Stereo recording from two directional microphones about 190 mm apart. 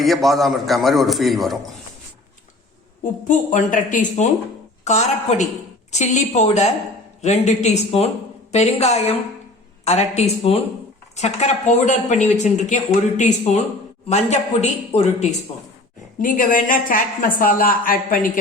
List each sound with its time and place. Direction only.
0.0 s a man's voice: centre (ahead or behind)
3.0 s a woman's voice: 40° left (ahead or behind)